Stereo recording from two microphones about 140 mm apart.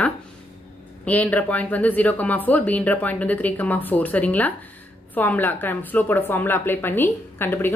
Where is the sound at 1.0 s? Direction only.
10° left (ahead or behind).